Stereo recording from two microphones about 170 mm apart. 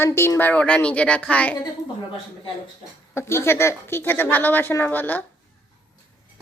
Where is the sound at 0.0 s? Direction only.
15° left (ahead or behind).